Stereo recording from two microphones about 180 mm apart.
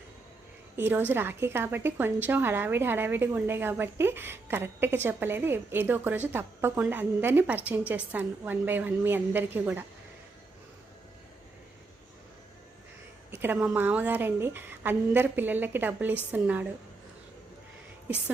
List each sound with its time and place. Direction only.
0.8 s a woman's voice: 10° right (ahead or behind)
13.3 s a woman's voice: 10° right (ahead or behind)